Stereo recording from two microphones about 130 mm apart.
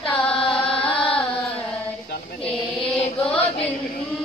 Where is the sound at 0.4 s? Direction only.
45° left (ahead or behind).